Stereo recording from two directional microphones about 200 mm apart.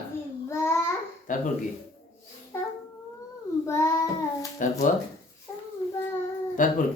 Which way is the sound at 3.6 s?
15° left (ahead or behind).